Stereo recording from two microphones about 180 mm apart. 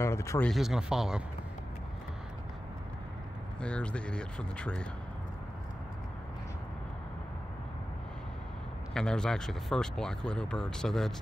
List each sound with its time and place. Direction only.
0.0 s speech: 15° left (ahead or behind)
0.5 s speech: centre (ahead or behind)
3.6 s speech: 5° left (ahead or behind)
8.9 s speech: 5° left (ahead or behind)